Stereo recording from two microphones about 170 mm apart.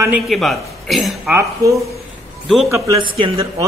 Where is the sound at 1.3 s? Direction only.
20° right (ahead or behind).